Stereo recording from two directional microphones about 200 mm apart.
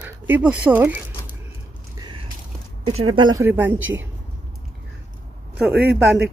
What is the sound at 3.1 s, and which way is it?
Speech, 20° right (ahead or behind).